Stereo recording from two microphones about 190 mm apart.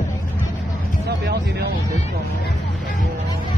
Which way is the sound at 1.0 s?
60° right (ahead or behind).